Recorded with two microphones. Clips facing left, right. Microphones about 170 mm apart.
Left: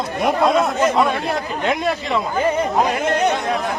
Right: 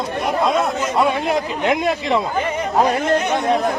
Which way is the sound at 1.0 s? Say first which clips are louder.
Right 1 dB; 15° right (ahead or behind).